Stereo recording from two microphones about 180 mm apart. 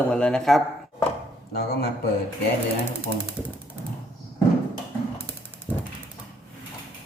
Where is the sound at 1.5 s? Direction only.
60° left (ahead or behind).